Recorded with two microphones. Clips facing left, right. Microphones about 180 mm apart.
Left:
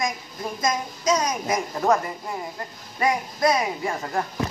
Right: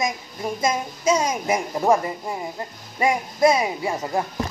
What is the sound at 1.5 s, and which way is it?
Speech, 10° right (ahead or behind).